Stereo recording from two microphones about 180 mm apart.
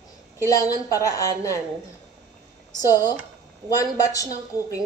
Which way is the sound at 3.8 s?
20° left (ahead or behind).